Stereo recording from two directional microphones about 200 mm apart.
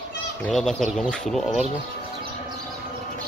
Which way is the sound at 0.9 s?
Centre (ahead or behind).